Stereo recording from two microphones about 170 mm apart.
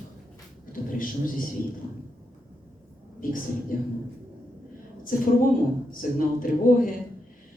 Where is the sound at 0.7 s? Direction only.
55° left (ahead or behind).